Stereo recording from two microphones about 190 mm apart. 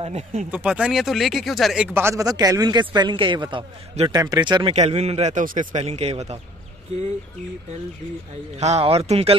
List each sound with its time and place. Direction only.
0.0 s speech: 35° right (ahead or behind)
0.5 s speech: 5° right (ahead or behind)
2.0 s a man's voice: 15° right (ahead or behind); by 5.7 s 45° right (ahead or behind)
5.7 s speech: 35° right (ahead or behind)
8.5 s speech: 35° right (ahead or behind)